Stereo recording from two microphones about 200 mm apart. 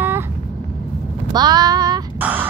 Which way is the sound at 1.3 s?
20° right (ahead or behind).